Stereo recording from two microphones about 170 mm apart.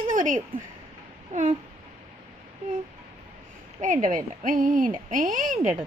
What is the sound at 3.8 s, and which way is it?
Speech, 50° right (ahead or behind).